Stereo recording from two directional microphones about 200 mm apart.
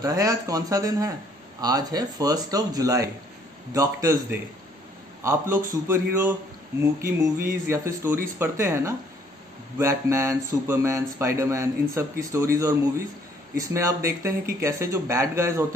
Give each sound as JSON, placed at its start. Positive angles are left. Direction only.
{"t": 0.0, "sound": "a man's voice", "side_deg": -15}